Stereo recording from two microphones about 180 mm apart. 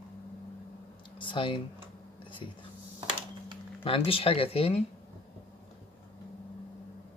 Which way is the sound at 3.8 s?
30° left (ahead or behind).